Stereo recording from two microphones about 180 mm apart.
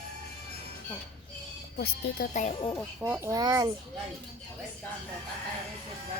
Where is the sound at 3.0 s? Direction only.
15° right (ahead or behind).